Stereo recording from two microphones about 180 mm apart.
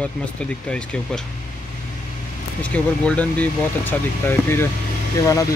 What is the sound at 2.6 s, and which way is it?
Speech, 5° left (ahead or behind).